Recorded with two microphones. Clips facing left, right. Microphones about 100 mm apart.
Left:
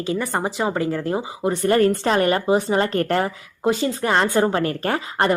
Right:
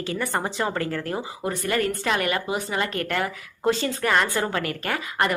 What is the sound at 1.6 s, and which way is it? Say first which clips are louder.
A woman's voice: left 7 dB; 35° left (ahead or behind).